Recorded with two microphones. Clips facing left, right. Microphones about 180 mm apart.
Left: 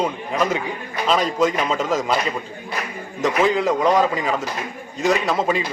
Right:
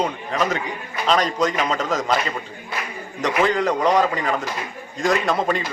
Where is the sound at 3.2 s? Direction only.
5° left (ahead or behind).